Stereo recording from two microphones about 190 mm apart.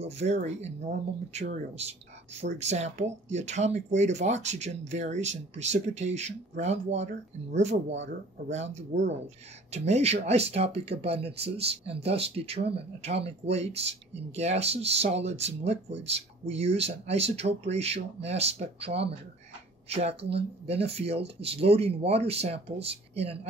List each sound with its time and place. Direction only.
0.0 s speech: 35° right (ahead or behind)
20.2 s speech: 65° right (ahead or behind)
20.6 s speech: 30° right (ahead or behind)